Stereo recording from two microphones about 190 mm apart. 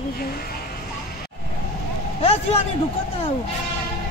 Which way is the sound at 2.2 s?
35° left (ahead or behind).